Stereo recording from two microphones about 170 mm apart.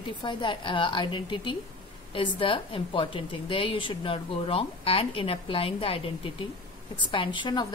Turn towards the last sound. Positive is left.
turn(degrees=30)  # may be behind; listen again after turning